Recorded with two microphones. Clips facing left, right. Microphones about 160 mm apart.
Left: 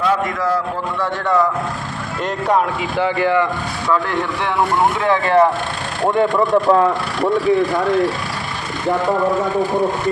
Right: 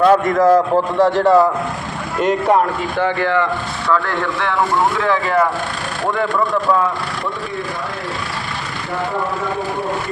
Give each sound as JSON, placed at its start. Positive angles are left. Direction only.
{"t": 0.0, "sound": "a man's voice", "side_deg": -45}
{"t": 3.0, "sound": "speech", "side_deg": 15}
{"t": 4.9, "sound": "speech", "side_deg": 25}